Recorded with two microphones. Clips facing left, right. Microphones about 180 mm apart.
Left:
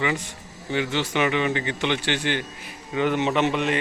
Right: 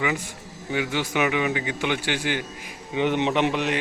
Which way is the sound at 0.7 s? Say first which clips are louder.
Left 1 dB; 10° right (ahead or behind).